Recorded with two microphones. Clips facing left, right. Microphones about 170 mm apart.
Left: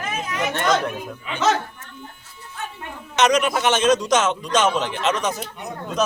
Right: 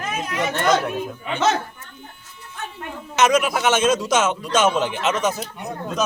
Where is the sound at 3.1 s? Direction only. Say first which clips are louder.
Even; 5° right (ahead or behind).